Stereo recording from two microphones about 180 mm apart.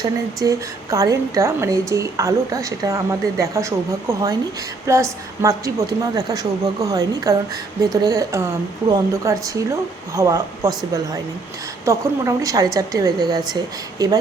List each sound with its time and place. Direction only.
0.4 s a woman's voice: 20° right (ahead or behind)
4.9 s a woman's voice: 15° right (ahead or behind)
11.9 s a woman's voice: 20° right (ahead or behind)